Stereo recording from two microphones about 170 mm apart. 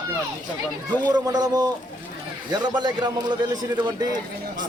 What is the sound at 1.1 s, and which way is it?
A man's voice, 25° right (ahead or behind).